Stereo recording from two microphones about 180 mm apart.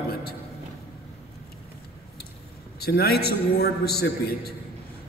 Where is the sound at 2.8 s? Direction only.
60° left (ahead or behind).